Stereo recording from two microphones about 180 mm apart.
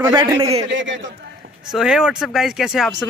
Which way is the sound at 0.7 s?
90° right.